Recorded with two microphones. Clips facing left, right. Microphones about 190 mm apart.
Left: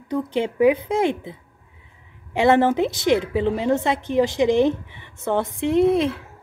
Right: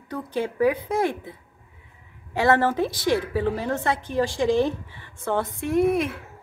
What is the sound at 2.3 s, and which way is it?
A woman's voice, 20° left (ahead or behind).